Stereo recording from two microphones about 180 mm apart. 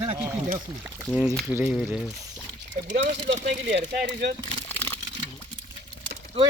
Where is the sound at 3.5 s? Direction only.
75° right (ahead or behind).